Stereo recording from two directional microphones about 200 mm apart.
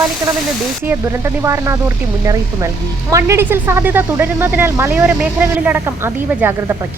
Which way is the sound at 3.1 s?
15° right (ahead or behind).